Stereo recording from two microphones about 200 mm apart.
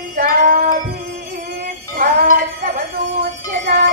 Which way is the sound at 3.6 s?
55° right (ahead or behind).